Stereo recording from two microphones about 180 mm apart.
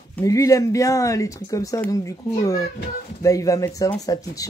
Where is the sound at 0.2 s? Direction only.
15° left (ahead or behind).